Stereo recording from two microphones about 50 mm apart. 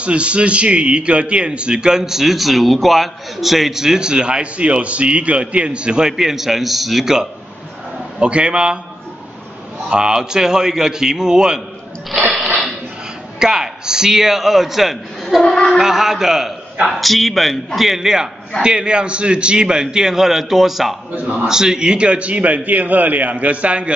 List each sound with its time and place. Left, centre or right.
0.0 s a man's voice: right; by 7.2 s centre
8.2 s a man's voice: right
9.8 s a man's voice: centre
13.4 s a man's voice: centre
15.4 s speech: centre
15.8 s a man's voice: centre
21.1 s speech: right
21.5 s a man's voice: centre